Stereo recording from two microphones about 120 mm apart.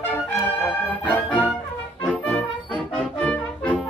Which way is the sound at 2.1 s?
10° left (ahead or behind).